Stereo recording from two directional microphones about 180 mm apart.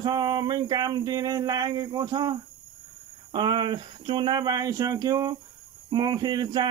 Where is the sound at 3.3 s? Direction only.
25° right (ahead or behind).